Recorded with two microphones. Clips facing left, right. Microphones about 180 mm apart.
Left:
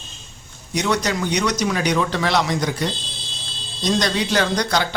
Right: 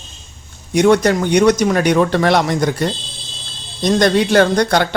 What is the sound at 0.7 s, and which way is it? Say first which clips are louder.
Speech: right 9 dB; 55° right (ahead or behind).